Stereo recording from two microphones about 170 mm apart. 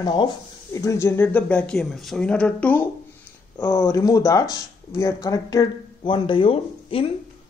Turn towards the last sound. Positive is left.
turn(degrees=30)  # may be behind; listen again after turning